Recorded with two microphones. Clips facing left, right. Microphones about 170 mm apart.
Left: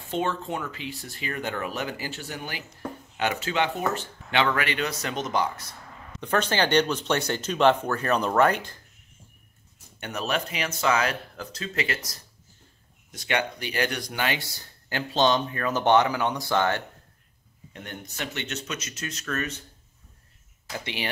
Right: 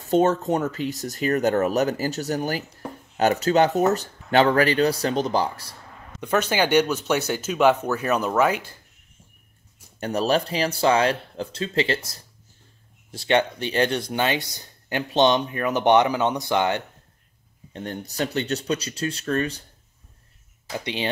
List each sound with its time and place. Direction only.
0.1 s speech: 40° right (ahead or behind)
6.2 s speech: 10° right (ahead or behind)
9.9 s speech: 35° right (ahead or behind); by 16.8 s 20° right (ahead or behind)
17.7 s speech: 35° right (ahead or behind)
20.7 s speech: 20° right (ahead or behind)